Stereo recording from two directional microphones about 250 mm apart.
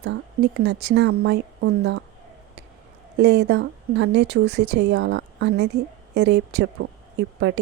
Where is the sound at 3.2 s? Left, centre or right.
Right.